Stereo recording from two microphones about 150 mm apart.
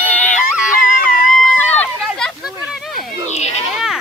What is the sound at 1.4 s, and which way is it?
Run, 10° left (ahead or behind).